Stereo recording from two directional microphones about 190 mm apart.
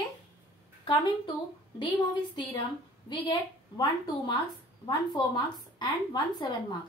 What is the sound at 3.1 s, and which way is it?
A woman's voice, 25° left (ahead or behind).